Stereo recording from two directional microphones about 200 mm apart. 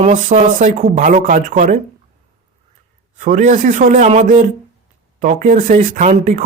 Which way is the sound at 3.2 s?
40° right (ahead or behind).